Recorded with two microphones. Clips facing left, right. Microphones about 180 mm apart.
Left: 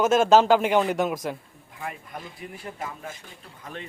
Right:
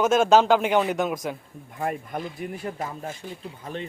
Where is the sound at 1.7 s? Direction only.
50° right (ahead or behind).